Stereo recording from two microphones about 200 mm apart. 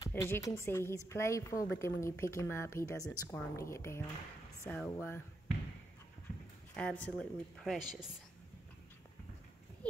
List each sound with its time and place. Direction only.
0.0 s a woman's voice: 10° left (ahead or behind)
6.7 s speech: 5° left (ahead or behind)